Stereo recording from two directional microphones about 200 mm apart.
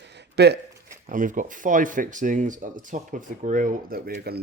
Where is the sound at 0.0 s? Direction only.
60° right (ahead or behind).